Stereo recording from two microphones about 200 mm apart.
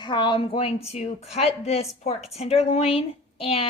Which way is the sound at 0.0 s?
25° left (ahead or behind).